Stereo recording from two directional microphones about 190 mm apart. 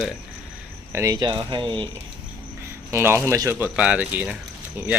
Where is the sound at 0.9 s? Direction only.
15° right (ahead or behind).